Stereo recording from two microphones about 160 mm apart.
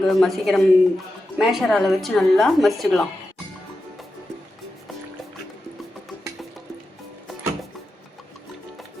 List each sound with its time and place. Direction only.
0.0 s speech: centre (ahead or behind)